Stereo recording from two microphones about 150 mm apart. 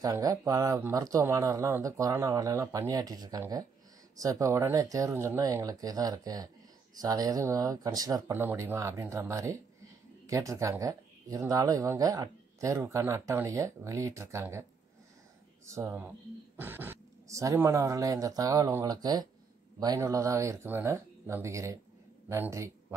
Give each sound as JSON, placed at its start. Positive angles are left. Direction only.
{"t": 0.0, "sound": "speech", "side_deg": -25}
{"t": 8.3, "sound": "speech", "side_deg": -15}